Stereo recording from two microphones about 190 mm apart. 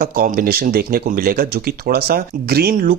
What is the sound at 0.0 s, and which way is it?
Speech, 45° right (ahead or behind).